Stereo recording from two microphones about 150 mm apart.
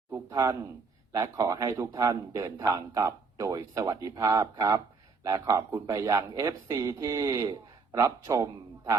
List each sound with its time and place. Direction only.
0.1 s speech: 20° right (ahead or behind)